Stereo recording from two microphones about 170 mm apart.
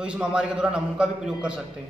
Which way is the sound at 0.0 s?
5° right (ahead or behind).